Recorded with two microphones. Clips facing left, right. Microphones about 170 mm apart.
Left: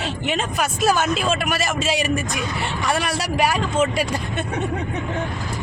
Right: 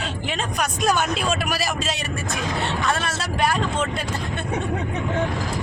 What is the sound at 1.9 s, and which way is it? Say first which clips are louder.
Speech: left 9 dB; 90° left.